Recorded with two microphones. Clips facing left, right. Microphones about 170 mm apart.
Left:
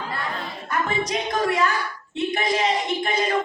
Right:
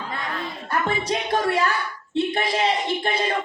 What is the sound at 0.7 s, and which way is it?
Speech, 30° right (ahead or behind).